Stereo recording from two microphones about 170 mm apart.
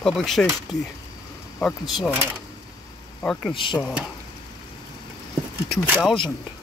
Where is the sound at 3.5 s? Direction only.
30° left (ahead or behind).